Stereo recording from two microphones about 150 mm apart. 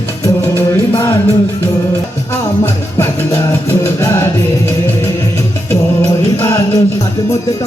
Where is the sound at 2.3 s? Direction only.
15° left (ahead or behind).